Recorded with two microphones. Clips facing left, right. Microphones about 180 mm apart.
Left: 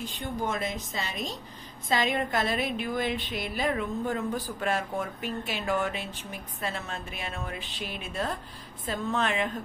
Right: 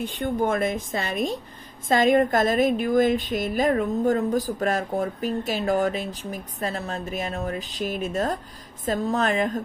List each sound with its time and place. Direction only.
0.0 s a woman's voice: 55° right (ahead or behind); by 9.6 s 40° right (ahead or behind)